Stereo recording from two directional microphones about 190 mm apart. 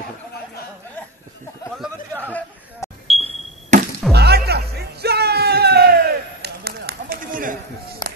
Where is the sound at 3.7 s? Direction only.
40° right (ahead or behind).